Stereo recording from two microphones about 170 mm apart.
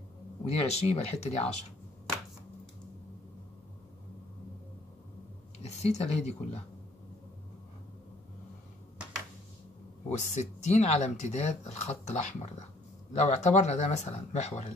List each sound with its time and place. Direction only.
0.5 s speech: 40° left (ahead or behind)
5.6 s speech: 40° left (ahead or behind)
10.0 s speech: 40° left (ahead or behind)